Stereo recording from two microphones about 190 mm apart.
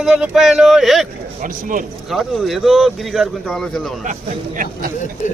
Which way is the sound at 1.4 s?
45° right (ahead or behind).